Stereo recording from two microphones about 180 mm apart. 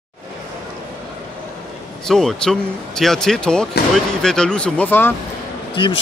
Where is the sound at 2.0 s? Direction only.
5° left (ahead or behind).